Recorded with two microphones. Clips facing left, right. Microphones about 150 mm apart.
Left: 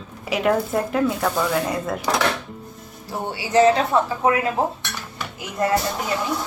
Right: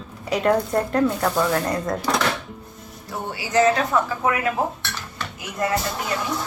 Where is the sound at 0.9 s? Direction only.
5° left (ahead or behind).